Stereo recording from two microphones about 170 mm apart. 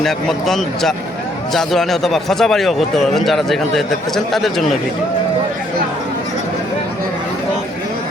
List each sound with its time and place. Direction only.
0.0 s a man's voice: centre (ahead or behind)